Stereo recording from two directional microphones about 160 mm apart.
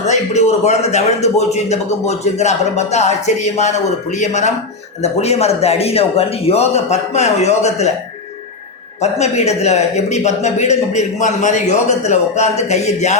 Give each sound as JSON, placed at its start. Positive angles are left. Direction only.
{"t": 0.1, "sound": "a man's voice", "side_deg": 45}
{"t": 9.0, "sound": "a man's voice", "side_deg": 45}